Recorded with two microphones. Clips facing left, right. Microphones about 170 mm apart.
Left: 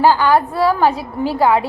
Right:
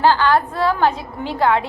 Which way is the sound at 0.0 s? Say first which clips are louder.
Left 2 dB; 10° left (ahead or behind).